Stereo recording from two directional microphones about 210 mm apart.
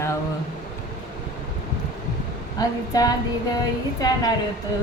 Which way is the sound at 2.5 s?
15° left (ahead or behind).